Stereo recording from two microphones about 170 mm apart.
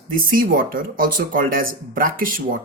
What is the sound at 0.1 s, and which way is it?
Speech, 55° right (ahead or behind).